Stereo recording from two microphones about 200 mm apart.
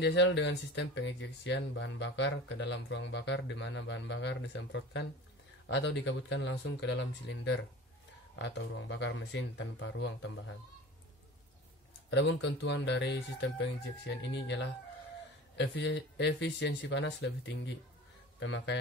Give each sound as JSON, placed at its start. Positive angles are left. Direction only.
{"t": 0.0, "sound": "speech", "side_deg": 60}
{"t": 12.1, "sound": "speech", "side_deg": 60}